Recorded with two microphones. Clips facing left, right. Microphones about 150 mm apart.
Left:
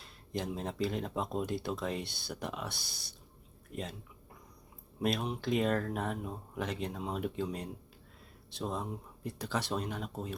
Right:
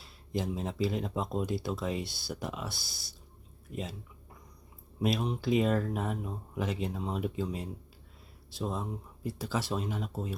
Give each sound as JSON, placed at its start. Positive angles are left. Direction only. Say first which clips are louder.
{"t": 0.0, "sound": "speech", "louder": "right 3 dB", "side_deg": -5}
{"t": 4.9, "sound": "speech", "louder": "right 2 dB", "side_deg": 0}